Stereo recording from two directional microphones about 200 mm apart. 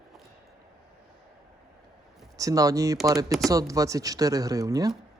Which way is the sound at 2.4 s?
15° right (ahead or behind).